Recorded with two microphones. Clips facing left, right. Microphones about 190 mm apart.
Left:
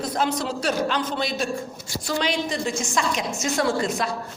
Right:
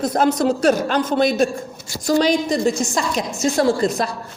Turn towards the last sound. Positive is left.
turn(degrees=-35)  # may be behind; listen again after turning